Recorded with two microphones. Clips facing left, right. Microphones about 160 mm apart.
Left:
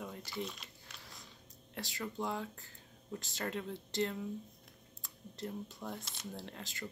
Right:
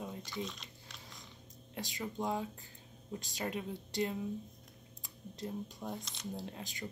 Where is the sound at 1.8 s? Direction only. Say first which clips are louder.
Right 1 dB; 20° right (ahead or behind).